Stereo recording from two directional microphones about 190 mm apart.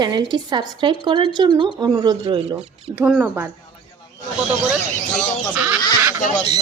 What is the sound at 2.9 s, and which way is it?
Speech, 5° right (ahead or behind).